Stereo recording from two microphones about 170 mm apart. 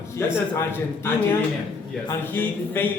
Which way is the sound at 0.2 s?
15° left (ahead or behind).